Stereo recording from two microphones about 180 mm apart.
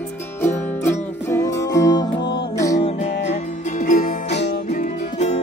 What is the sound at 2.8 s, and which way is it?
Music, 40° left (ahead or behind).